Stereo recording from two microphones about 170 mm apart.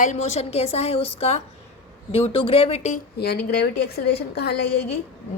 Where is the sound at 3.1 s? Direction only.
70° left (ahead or behind).